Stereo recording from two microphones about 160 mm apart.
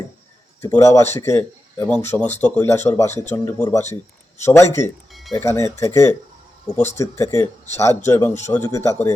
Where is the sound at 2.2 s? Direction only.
45° left (ahead or behind).